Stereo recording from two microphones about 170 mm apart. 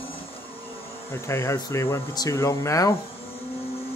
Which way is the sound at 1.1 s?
15° left (ahead or behind).